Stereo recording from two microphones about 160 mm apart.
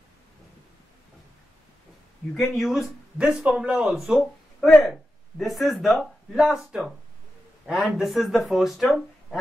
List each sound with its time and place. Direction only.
2.3 s speech: centre (ahead or behind)